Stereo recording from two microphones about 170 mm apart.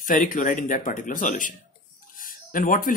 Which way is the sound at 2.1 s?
55° left (ahead or behind).